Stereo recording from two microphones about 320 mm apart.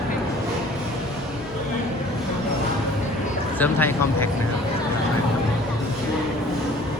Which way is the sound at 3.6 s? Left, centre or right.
Centre.